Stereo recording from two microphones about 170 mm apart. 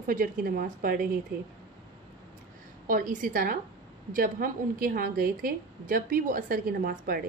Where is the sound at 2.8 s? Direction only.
50° right (ahead or behind).